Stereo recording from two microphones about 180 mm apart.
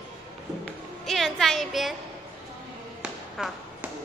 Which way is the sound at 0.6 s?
Centre (ahead or behind).